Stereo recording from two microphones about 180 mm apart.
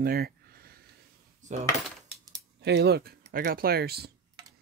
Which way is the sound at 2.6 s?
65° right (ahead or behind).